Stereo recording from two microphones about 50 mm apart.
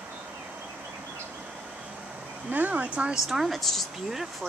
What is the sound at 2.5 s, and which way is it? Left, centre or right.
Speech, right.